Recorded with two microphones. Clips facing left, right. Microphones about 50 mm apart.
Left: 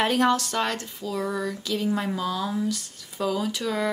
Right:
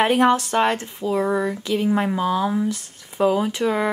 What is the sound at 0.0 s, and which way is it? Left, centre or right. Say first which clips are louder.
Speech: right 5 dB; right.